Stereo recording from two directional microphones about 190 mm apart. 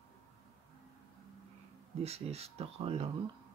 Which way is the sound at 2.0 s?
35° right (ahead or behind).